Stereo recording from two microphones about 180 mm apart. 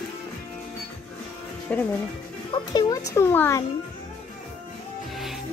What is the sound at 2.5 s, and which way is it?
A child's voice, 20° left (ahead or behind).